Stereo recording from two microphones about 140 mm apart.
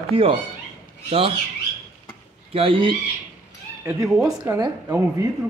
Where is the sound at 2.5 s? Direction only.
40° right (ahead or behind).